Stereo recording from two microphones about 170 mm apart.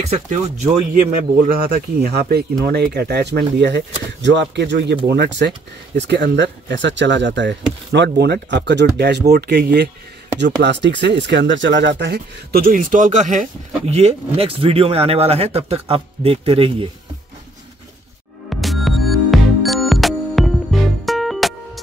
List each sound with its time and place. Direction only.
0.1 s speech: 45° right (ahead or behind); by 9.8 s 75° right (ahead or behind)
10.4 s speech: 90° right; by 16.7 s 35° right (ahead or behind)
18.5 s music: centre (ahead or behind)